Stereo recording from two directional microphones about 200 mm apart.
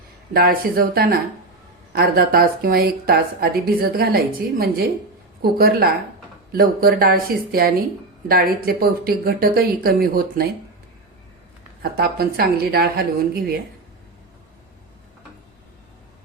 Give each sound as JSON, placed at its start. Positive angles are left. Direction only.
{"t": 0.3, "sound": "a woman's voice", "side_deg": -45}
{"t": 11.8, "sound": "a woman's voice", "side_deg": -50}